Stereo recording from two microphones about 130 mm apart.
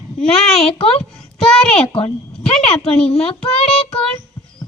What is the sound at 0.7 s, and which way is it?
Speech, 50° left (ahead or behind).